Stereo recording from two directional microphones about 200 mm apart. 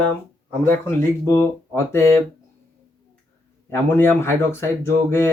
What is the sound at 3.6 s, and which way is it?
Speech, 10° left (ahead or behind).